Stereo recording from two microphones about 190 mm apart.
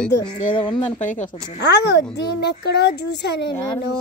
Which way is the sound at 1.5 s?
65° left (ahead or behind).